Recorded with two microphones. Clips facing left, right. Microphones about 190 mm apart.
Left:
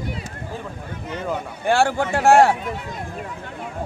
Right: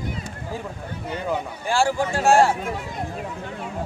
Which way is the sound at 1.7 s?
60° left (ahead or behind).